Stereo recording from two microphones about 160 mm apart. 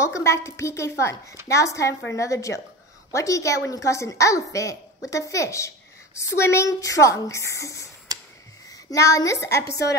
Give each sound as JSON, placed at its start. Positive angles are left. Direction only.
{"t": 0.0, "sound": "a woman's voice", "side_deg": 15}